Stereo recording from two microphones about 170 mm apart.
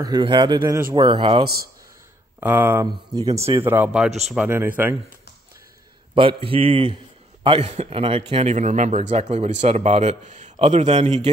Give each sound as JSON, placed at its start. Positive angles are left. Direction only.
{"t": 0.0, "sound": "speech", "side_deg": -25}
{"t": 2.4, "sound": "speech", "side_deg": -10}
{"t": 6.1, "sound": "a man's voice", "side_deg": -30}